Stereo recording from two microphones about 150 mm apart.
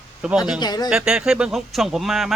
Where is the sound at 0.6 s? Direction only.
25° left (ahead or behind).